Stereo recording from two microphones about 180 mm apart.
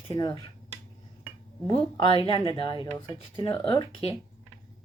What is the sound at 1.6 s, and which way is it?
Speech, 25° left (ahead or behind).